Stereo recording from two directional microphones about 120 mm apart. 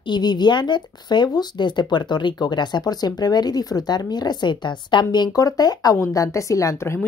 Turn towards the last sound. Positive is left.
turn(degrees=20)  # may be behind; listen again after turning